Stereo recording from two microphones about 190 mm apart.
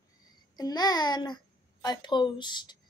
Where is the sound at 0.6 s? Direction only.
20° left (ahead or behind).